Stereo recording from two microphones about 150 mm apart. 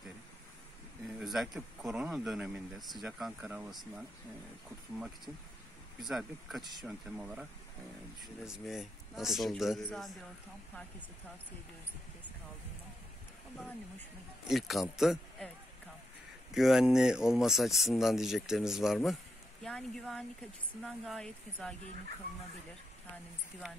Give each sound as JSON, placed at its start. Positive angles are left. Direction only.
{"t": 1.2, "sound": "speech", "side_deg": 0}
{"t": 14.5, "sound": "speech", "side_deg": 0}
{"t": 16.5, "sound": "speech", "side_deg": -5}